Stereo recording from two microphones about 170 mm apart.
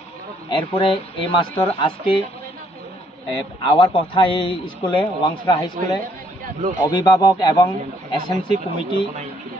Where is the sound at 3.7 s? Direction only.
30° left (ahead or behind).